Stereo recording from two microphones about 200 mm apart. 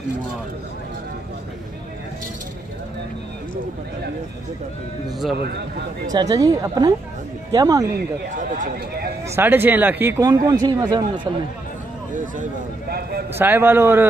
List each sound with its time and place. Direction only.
5.4 s speech: 55° right (ahead or behind)
6.1 s speech: 20° right (ahead or behind)
8.4 s speech: 40° right (ahead or behind)
9.3 s speech: 10° right (ahead or behind)
13.3 s speech: 10° right (ahead or behind)